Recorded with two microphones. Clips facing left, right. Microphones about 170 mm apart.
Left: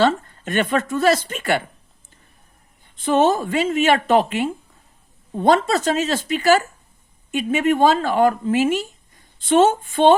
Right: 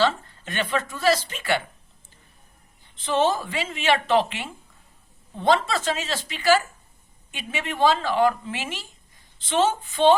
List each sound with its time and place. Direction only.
0.0 s speech: 50° left (ahead or behind)
2.9 s speech: 50° left (ahead or behind)